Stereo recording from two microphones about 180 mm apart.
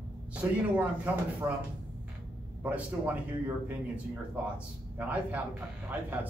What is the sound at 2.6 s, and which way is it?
A man's voice, 10° right (ahead or behind).